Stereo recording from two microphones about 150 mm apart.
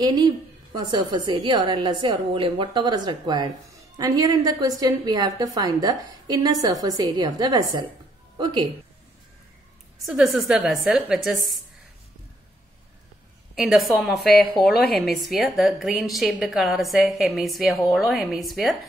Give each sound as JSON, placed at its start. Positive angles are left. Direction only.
{"t": 0.0, "sound": "a woman's voice", "side_deg": -25}
{"t": 10.0, "sound": "a woman's voice", "side_deg": 0}
{"t": 13.6, "sound": "a woman's voice", "side_deg": 0}